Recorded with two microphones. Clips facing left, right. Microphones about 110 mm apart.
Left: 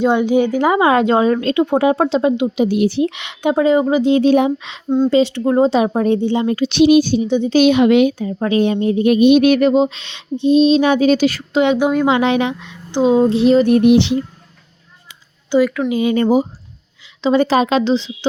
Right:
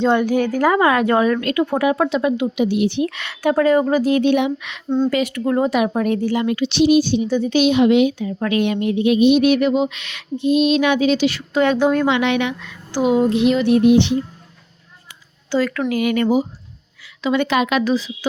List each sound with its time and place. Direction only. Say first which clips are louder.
0.0 s a woman's voice: left 2 dB; 15° left (ahead or behind)
2.6 s speech: left 3 dB; 45° left (ahead or behind)
3.0 s a woman's voice: left 2 dB; 20° left (ahead or behind)
6.6 s speech: left 4 dB; 50° left (ahead or behind)
7.3 s a woman's voice: left 3 dB; 20° left (ahead or behind)
7.5 s a woman's voice: left 3 dB; 55° left (ahead or behind)
8.2 s a sound: left 3 dB; 30° left (ahead or behind)
9.0 s a sound: left 3 dB; 50° left (ahead or behind)
11.5 s speech: left 1 dB; 15° left (ahead or behind)
12.0 s a sound: left 3 dB; 35° left (ahead or behind)
12.6 s a woman's voice: left 4 dB; 25° left (ahead or behind); by 13.8 s 40° left (ahead or behind)
13.8 s speech: left 2 dB; 90° left
15.4 s speech: left 5 dB; 15° left (ahead or behind)
15.9 s a woman's voice: left 3 dB; 25° left (ahead or behind)